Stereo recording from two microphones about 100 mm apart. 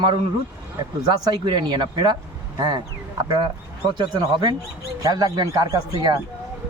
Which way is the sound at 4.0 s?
45° right (ahead or behind).